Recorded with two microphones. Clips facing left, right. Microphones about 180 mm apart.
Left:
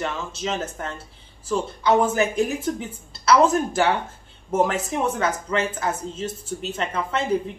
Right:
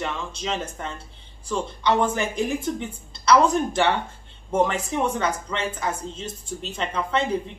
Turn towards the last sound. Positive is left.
turn(degrees=5)  # may be behind; listen again after turning